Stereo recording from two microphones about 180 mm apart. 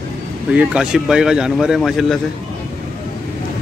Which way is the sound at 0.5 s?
5° right (ahead or behind).